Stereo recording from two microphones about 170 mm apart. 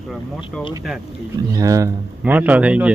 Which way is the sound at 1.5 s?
20° right (ahead or behind).